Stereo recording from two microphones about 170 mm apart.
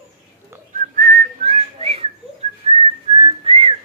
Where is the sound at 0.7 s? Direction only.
50° right (ahead or behind).